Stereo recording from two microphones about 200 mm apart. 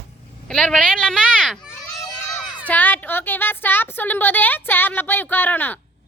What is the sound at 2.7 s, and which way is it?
A woman's voice, 10° left (ahead or behind).